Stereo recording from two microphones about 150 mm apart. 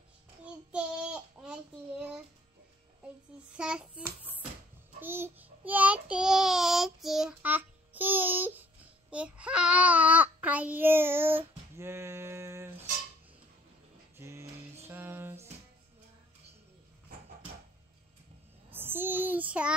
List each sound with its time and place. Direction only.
0.7 s child singing: 10° right (ahead or behind)
3.5 s child singing: 5° right (ahead or behind)
5.0 s child singing: 15° right (ahead or behind)
14.1 s music: 20° right (ahead or behind)
18.7 s child singing: 15° right (ahead or behind)